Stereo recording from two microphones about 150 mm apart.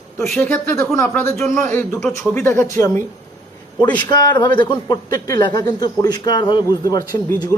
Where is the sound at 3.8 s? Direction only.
30° left (ahead or behind).